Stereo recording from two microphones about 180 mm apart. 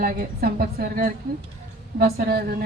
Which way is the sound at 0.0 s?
55° right (ahead or behind).